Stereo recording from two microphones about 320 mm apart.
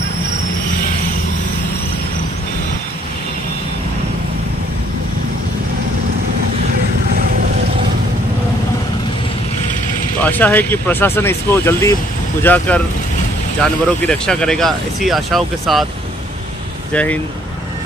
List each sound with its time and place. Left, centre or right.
7.1 s vehicle: right
10.2 s speech: centre
16.9 s speech: centre